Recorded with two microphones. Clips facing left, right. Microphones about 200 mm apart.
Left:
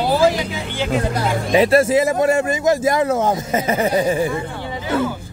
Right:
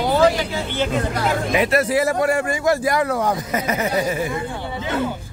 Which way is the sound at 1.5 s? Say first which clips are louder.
Left 6 dB; 30° left (ahead or behind).